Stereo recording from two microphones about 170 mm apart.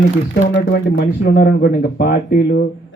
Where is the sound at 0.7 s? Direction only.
70° left (ahead or behind).